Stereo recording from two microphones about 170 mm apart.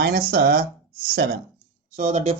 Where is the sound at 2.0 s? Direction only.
40° right (ahead or behind).